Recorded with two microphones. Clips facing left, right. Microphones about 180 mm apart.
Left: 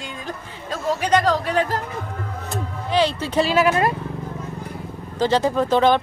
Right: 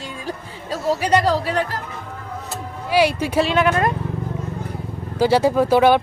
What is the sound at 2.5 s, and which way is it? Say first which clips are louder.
Music: right 1 dB; 10° right (ahead or behind).